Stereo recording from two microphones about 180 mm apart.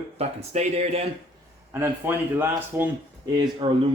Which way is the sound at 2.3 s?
10° right (ahead or behind).